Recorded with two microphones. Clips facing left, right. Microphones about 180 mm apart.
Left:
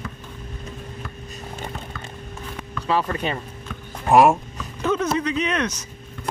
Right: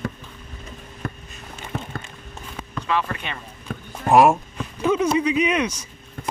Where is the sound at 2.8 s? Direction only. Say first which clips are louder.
Left 3 dB; 35° left (ahead or behind).